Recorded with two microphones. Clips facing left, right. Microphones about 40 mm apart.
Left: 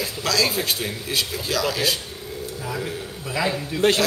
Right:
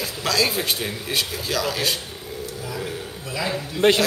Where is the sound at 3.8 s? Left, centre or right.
Right.